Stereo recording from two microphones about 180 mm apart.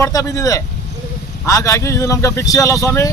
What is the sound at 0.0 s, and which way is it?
Speech, 20° left (ahead or behind).